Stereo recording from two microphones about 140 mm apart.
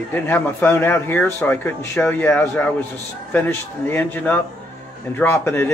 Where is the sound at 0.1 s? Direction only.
15° left (ahead or behind).